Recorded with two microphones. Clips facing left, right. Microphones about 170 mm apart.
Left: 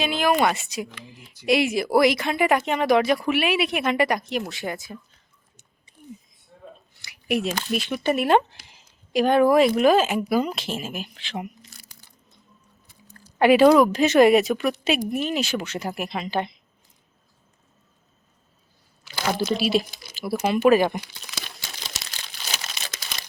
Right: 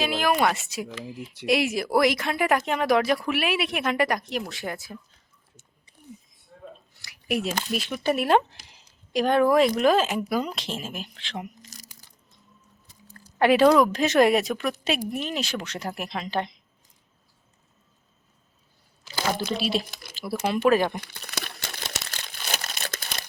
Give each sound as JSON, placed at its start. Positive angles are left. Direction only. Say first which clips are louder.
{"t": 0.0, "sound": "speech", "louder": "left 2 dB", "side_deg": 0}
{"t": 7.0, "sound": "a sound", "louder": "left 3 dB", "side_deg": 0}
{"t": 7.7, "sound": "speech", "louder": "left 3 dB", "side_deg": 0}
{"t": 11.6, "sound": "crunch", "louder": "right 2 dB", "side_deg": -40}
{"t": 13.4, "sound": "speech", "louder": "left 3 dB", "side_deg": 5}
{"t": 19.5, "sound": "speech", "louder": "left 4 dB", "side_deg": 5}
{"t": 19.9, "sound": "speech", "louder": "right 1 dB", "side_deg": -60}
{"t": 20.1, "sound": "speech", "louder": "left 3 dB", "side_deg": 5}
{"t": 21.0, "sound": "crumpling", "louder": "right 3 dB", "side_deg": -55}